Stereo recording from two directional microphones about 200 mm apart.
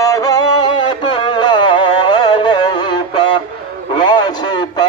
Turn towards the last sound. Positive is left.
turn(degrees=20)  # may be behind; listen again after turning